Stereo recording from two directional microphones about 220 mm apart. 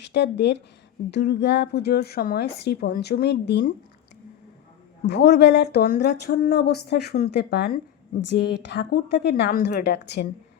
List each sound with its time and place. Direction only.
0.0 s speech: 50° left (ahead or behind)
5.0 s speech: 50° left (ahead or behind)